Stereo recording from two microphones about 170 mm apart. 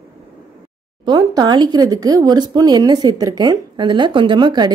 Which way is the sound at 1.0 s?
25° right (ahead or behind).